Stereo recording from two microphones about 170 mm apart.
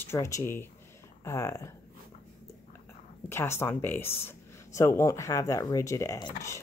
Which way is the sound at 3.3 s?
15° left (ahead or behind).